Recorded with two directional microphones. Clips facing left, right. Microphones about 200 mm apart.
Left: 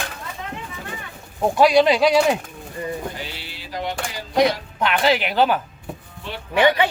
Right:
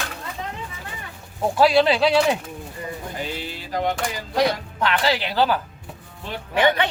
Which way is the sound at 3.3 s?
45° right (ahead or behind).